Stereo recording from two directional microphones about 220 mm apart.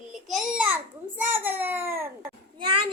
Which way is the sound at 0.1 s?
Centre (ahead or behind).